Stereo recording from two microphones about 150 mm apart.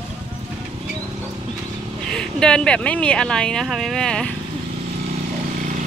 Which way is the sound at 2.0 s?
5° left (ahead or behind).